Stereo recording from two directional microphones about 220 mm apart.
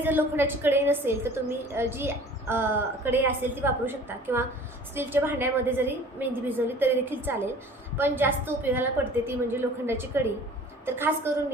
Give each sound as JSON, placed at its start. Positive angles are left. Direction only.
{"t": 0.0, "sound": "a woman's voice", "side_deg": -10}